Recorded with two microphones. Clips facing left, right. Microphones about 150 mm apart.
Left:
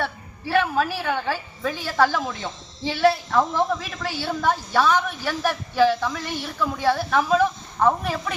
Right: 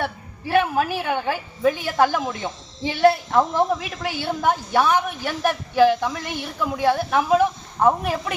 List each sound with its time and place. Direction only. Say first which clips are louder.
0.5 s a woman's voice: right 2 dB; 15° right (ahead or behind)